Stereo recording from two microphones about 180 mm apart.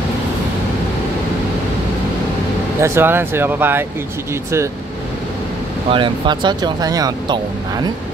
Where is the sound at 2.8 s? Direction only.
10° right (ahead or behind).